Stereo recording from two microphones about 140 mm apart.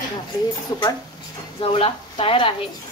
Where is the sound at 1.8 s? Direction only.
40° left (ahead or behind).